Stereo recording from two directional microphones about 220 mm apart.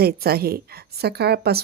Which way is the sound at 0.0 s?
45° right (ahead or behind).